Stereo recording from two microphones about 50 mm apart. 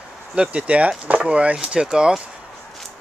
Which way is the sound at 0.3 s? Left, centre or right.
Centre.